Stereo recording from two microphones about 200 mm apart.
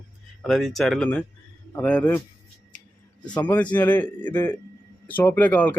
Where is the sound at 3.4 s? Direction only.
10° left (ahead or behind).